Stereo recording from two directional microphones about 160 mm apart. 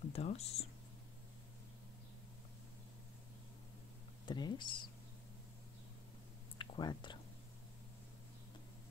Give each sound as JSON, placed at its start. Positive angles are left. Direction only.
{"t": 0.1, "sound": "speech", "side_deg": 40}
{"t": 4.3, "sound": "speech", "side_deg": 30}
{"t": 6.6, "sound": "speech", "side_deg": 30}